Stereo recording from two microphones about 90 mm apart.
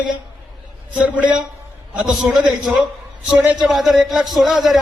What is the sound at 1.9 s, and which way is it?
Speech, 15° right (ahead or behind).